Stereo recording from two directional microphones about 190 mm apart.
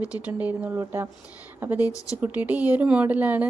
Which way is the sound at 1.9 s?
15° left (ahead or behind).